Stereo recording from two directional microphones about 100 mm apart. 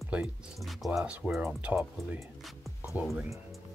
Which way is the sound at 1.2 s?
15° right (ahead or behind).